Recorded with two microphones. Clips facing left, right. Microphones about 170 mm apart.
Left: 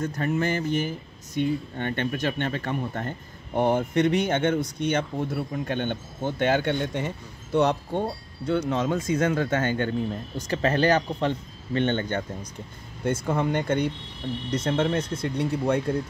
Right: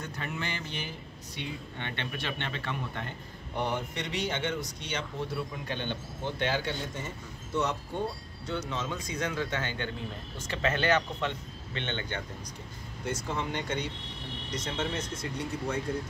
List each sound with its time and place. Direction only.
0.0 s speech: 45° left (ahead or behind); by 15.8 s 60° left (ahead or behind)